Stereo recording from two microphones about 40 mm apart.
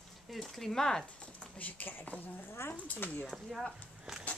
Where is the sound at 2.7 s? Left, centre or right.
Left.